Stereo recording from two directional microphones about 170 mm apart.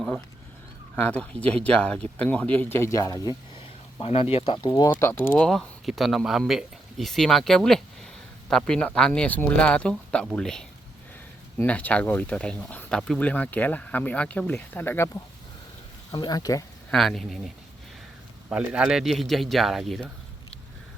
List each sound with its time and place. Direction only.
0.9 s speech: 10° left (ahead or behind)
4.0 s speech: 35° left (ahead or behind)
16.9 s speech: centre (ahead or behind)